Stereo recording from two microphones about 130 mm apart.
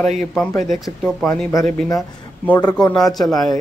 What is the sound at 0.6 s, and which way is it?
A man's voice, centre (ahead or behind).